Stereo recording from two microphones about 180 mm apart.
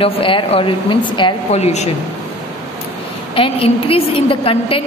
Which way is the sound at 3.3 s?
30° left (ahead or behind).